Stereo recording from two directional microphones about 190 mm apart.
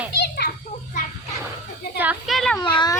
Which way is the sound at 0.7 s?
30° left (ahead or behind).